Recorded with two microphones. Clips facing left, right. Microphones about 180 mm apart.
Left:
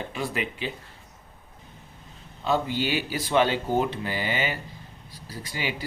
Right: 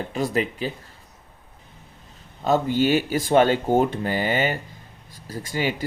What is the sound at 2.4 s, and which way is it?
Speech, 45° right (ahead or behind).